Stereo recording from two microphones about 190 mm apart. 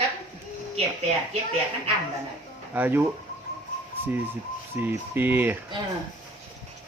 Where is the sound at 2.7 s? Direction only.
10° right (ahead or behind).